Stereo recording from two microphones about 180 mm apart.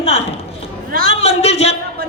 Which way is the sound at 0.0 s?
35° left (ahead or behind).